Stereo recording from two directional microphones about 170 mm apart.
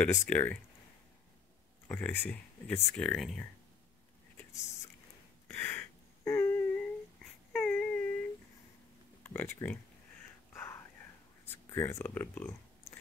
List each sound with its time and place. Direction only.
0.0 s speech: 10° left (ahead or behind)
1.9 s speech: 10° left (ahead or behind)
5.5 s a sound: 15° left (ahead or behind)
9.2 s speech: 10° left (ahead or behind)
10.5 s whispering: 15° left (ahead or behind)
11.4 s speech: 15° left (ahead or behind)